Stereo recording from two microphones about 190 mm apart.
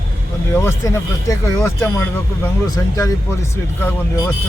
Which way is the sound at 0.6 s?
15° left (ahead or behind).